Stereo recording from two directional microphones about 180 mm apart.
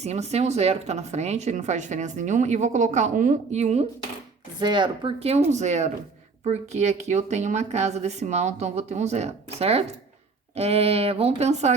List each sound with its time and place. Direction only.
0.0 s speech: 35° right (ahead or behind)
4.6 s speech: 25° right (ahead or behind)